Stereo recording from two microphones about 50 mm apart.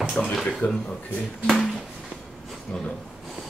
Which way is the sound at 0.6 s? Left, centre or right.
Left.